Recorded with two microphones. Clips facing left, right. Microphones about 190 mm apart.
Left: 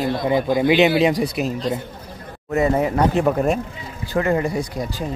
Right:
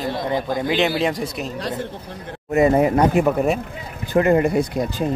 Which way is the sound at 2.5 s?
15° right (ahead or behind).